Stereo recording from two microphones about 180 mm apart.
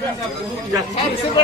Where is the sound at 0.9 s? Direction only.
40° left (ahead or behind).